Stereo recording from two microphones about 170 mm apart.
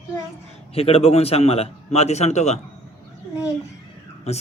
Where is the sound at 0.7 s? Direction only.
35° left (ahead or behind).